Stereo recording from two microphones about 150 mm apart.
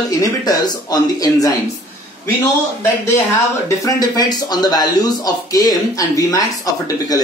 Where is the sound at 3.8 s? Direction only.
25° left (ahead or behind).